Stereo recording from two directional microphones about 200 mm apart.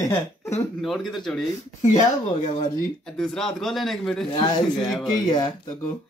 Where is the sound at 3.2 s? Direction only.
Centre (ahead or behind).